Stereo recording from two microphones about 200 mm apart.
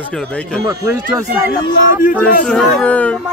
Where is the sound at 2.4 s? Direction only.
5° left (ahead or behind).